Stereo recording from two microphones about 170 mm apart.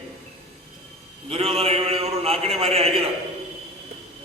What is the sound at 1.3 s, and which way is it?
A man's voice, 35° right (ahead or behind).